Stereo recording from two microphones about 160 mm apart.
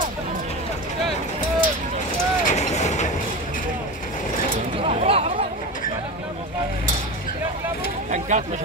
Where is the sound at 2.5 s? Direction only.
45° left (ahead or behind).